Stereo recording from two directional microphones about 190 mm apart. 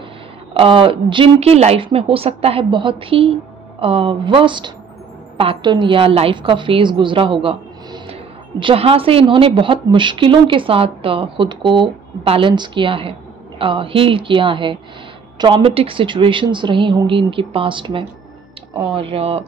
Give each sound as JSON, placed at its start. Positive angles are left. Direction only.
{"t": 0.6, "sound": "a woman's voice", "side_deg": -30}